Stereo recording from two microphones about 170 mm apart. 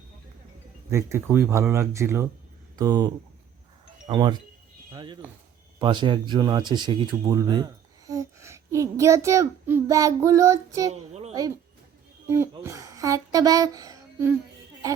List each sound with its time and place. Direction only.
0.9 s speech: 15° right (ahead or behind)
11.1 s a sound: 40° right (ahead or behind)
12.3 s speech: 15° right (ahead or behind)